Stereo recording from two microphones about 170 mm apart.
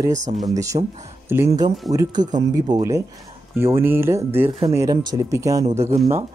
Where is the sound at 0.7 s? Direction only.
35° right (ahead or behind).